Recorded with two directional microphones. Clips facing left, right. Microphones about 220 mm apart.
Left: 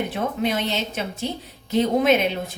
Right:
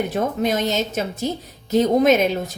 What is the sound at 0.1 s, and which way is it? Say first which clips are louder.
A woman's voice: right 3 dB; 45° right (ahead or behind).